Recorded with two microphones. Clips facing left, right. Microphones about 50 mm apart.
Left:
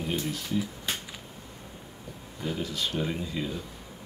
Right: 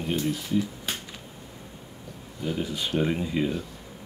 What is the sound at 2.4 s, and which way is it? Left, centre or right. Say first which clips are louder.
Speech: right 2 dB; centre.